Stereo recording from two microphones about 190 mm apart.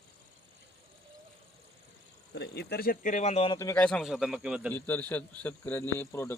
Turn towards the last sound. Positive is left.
turn(degrees=15)  # may be behind; listen again after turning